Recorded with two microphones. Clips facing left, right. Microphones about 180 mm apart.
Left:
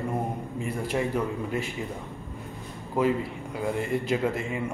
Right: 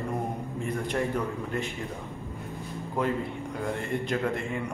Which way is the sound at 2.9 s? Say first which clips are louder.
Left 4 dB; 5° left (ahead or behind).